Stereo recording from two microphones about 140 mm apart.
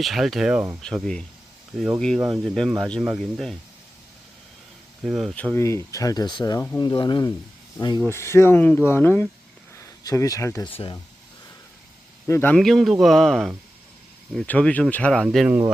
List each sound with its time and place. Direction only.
0.0 s speech: centre (ahead or behind)
5.0 s speech: centre (ahead or behind)
5.5 s speech: 20° left (ahead or behind)
8.0 s speech: 20° left (ahead or behind)
9.7 s a sound: 25° left (ahead or behind)
10.6 s speech: 40° left (ahead or behind)
12.3 s speech: 15° left (ahead or behind)
12.5 s speech: centre (ahead or behind)